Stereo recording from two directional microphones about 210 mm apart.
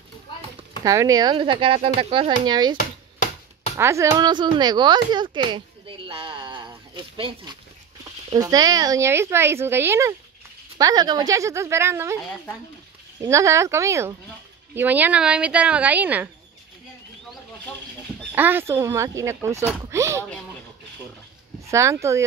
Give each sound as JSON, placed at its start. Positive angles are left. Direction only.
{"t": 0.8, "sound": "speech", "side_deg": -15}
{"t": 2.8, "sound": "chopping", "side_deg": 35}
{"t": 3.7, "sound": "speech", "side_deg": -15}
{"t": 13.2, "sound": "speech", "side_deg": -15}
{"t": 18.3, "sound": "speech", "side_deg": -10}
{"t": 21.6, "sound": "speech", "side_deg": -15}